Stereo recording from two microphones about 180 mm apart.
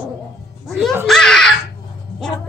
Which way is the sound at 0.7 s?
Centre (ahead or behind).